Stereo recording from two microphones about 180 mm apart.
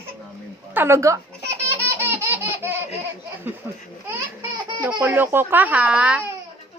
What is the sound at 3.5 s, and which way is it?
Speech, 10° right (ahead or behind).